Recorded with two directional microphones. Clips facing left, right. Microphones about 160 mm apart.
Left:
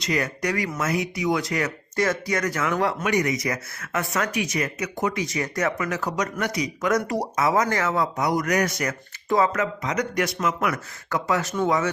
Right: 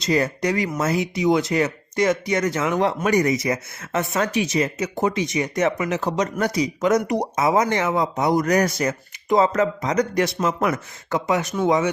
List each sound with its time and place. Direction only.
0.0 s speech: 30° right (ahead or behind)
3.0 s speech: 35° right (ahead or behind); by 11.9 s 20° right (ahead or behind)